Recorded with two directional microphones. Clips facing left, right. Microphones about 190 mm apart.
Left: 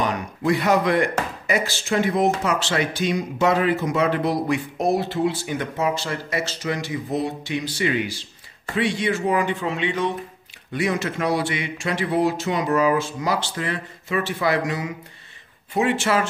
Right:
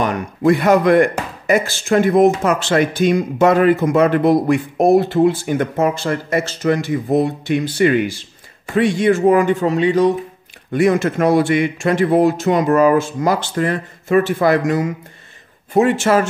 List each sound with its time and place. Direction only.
0.0 s speech: 50° right (ahead or behind)
10.7 s speech: 50° right (ahead or behind)